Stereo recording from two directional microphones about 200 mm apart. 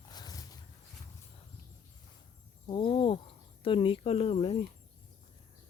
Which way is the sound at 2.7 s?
25° left (ahead or behind).